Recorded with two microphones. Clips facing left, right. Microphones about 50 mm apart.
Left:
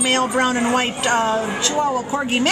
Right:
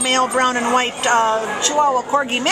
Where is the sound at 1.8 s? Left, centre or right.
Centre.